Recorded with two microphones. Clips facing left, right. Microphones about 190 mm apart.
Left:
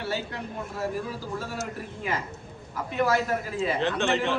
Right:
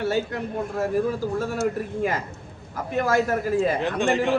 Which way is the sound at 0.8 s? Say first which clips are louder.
Right 8 dB; 50° right (ahead or behind).